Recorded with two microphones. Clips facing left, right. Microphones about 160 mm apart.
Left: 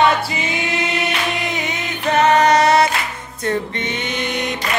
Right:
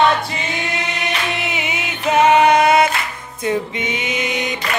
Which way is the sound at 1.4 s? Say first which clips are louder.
Left 1 dB; 10° right (ahead or behind).